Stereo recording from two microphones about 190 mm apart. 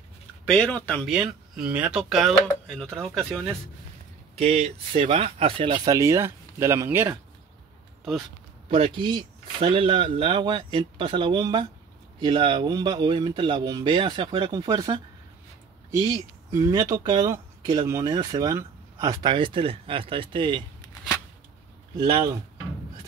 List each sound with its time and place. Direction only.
0.5 s speech: 5° left (ahead or behind)
1.1 s speech: 5° right (ahead or behind)
4.4 s speech: 35° right (ahead or behind)
5.9 s speech: 15° right (ahead or behind)
8.6 s speech: 30° right (ahead or behind)
21.9 s speech: 25° right (ahead or behind)